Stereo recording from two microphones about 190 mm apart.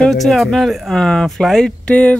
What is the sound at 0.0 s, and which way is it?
Speech, centre (ahead or behind).